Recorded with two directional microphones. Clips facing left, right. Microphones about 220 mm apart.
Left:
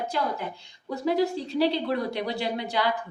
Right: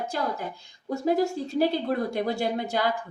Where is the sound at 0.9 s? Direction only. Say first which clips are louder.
Right 1 dB; 45° right (ahead or behind).